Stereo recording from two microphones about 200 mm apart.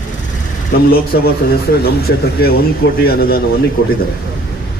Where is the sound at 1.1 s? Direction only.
50° left (ahead or behind).